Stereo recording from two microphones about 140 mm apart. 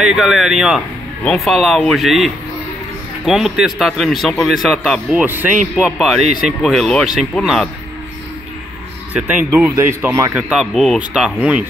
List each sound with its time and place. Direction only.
0.0 s speech: 5° right (ahead or behind)
5.2 s a man's voice: 15° right (ahead or behind)
6.4 s speech: centre (ahead or behind)
9.1 s a man's voice: 10° right (ahead or behind)
10.3 s a man's voice: 5° right (ahead or behind)